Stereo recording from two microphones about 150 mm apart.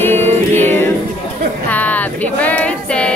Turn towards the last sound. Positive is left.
turn(degrees=10)  # may be behind; listen again after turning